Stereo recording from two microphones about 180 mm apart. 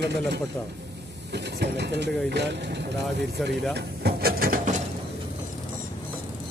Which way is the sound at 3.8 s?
60° right (ahead or behind).